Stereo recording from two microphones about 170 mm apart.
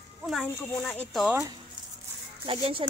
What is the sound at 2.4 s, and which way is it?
Speech, 30° right (ahead or behind).